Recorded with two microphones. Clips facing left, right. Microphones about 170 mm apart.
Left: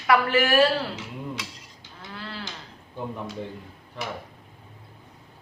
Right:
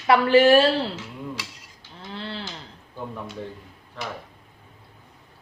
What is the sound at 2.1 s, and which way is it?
Cattle, 25° right (ahead or behind).